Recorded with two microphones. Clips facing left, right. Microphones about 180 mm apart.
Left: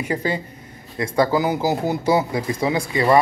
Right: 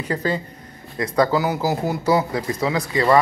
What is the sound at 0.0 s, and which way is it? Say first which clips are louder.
Speech: even; 15° left (ahead or behind).